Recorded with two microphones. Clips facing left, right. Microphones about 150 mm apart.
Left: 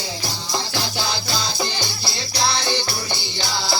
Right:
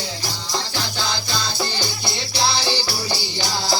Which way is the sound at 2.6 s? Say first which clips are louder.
Even; 30° right (ahead or behind).